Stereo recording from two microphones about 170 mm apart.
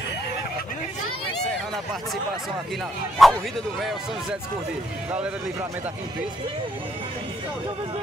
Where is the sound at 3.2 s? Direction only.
Centre (ahead or behind).